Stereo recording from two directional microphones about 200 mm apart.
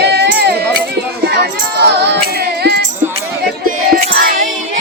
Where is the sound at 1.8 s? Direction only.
55° right (ahead or behind).